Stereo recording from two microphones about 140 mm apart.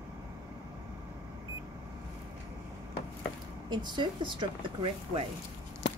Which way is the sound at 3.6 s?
30° right (ahead or behind).